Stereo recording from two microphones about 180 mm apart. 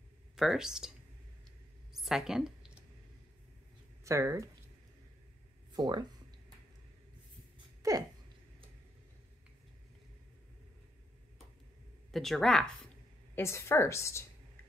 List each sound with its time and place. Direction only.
0.4 s speech: 5° right (ahead or behind)
2.0 s a sound: centre (ahead or behind)
4.0 s speech: 15° right (ahead or behind)
5.7 s speech: 25° right (ahead or behind)
7.5 s a sound: 20° right (ahead or behind)
12.1 s speech: centre (ahead or behind)
13.3 s a woman's voice: 15° left (ahead or behind)